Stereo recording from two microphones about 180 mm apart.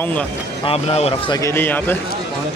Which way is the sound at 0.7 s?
35° left (ahead or behind).